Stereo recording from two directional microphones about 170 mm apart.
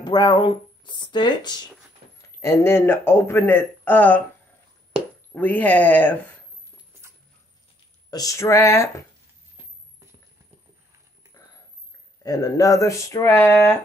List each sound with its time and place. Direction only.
0.0 s speech: 25° left (ahead or behind)
2.4 s speech: 15° left (ahead or behind)
5.3 s speech: 10° left (ahead or behind)
8.1 s speech: 20° left (ahead or behind)
12.2 s speech: 20° left (ahead or behind)